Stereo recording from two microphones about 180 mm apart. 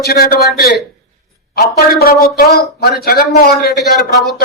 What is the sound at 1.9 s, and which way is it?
A man's voice, 55° left (ahead or behind).